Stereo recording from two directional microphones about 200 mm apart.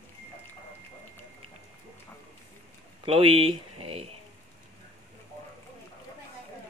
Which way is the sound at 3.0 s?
25° right (ahead or behind).